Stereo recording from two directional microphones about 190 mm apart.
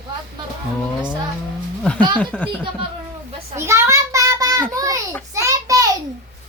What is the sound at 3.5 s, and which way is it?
Child singing, 15° right (ahead or behind).